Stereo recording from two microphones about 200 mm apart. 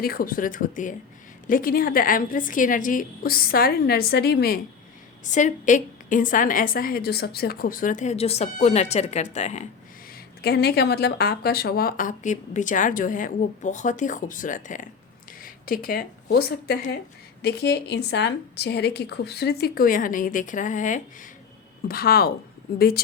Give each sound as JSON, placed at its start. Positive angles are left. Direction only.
{"t": 0.0, "sound": "a woman's voice", "side_deg": 45}
{"t": 5.2, "sound": "a woman's voice", "side_deg": 40}
{"t": 10.4, "sound": "a woman's voice", "side_deg": 55}